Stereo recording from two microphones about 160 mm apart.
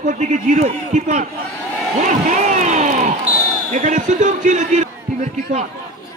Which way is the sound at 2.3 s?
50° right (ahead or behind).